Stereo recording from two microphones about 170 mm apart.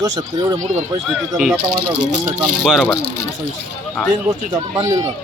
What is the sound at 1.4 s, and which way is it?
Speech, centre (ahead or behind).